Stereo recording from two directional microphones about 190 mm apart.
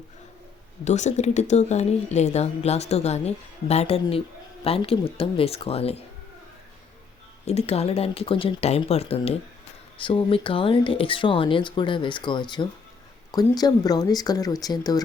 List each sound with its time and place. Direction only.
0.9 s speech: 40° left (ahead or behind)
7.4 s speech: 35° left (ahead or behind)